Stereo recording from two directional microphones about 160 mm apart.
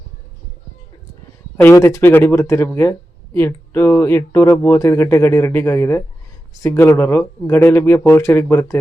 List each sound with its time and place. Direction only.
1.6 s speech: 15° left (ahead or behind)